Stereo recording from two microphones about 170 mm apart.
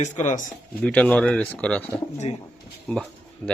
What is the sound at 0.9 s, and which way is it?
Speech, 5° left (ahead or behind).